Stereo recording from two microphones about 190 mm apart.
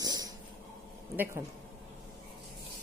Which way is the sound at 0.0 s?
20° right (ahead or behind).